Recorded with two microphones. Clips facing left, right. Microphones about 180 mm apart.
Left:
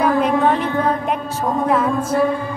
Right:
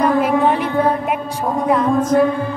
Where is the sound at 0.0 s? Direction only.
5° right (ahead or behind).